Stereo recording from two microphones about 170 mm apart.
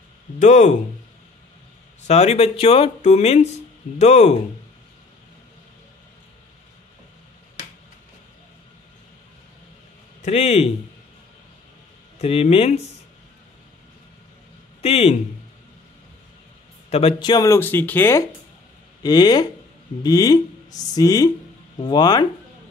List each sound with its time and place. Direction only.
0.4 s speech: 45° left (ahead or behind)
2.0 s speech: 40° left (ahead or behind)
10.2 s speech: 40° left (ahead or behind)
12.2 s speech: 35° left (ahead or behind)
14.8 s a man's voice: 35° left (ahead or behind)
16.9 s speech: 30° left (ahead or behind); by 18.2 s 15° left (ahead or behind)
19.0 s speech: 25° left (ahead or behind)